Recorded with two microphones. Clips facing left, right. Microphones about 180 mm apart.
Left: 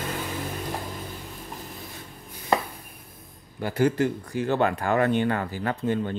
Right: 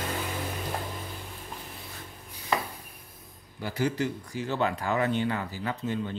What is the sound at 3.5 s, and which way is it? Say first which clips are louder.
Speech: left 6 dB; 55° left (ahead or behind).